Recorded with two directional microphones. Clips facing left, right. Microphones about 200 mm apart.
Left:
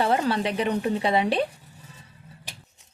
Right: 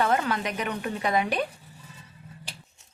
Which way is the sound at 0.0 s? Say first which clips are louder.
Left 2 dB; 30° left (ahead or behind).